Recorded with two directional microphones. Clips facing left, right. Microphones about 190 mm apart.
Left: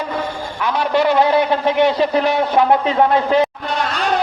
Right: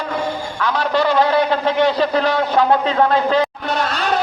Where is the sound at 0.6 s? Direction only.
20° left (ahead or behind).